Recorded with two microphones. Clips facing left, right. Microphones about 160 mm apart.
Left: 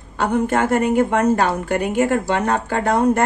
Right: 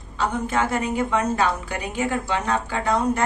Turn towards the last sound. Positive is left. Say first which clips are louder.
# left 5 dB
turn(degrees=55)  # may be behind; listen again after turning